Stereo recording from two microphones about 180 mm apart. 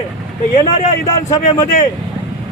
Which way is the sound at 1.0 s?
20° left (ahead or behind).